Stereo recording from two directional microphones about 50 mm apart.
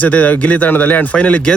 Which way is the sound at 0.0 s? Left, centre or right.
Left.